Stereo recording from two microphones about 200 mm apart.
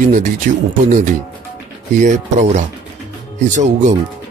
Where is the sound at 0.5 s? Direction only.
40° right (ahead or behind).